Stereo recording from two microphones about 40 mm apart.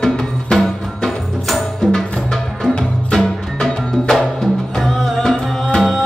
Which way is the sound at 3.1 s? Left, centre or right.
Centre.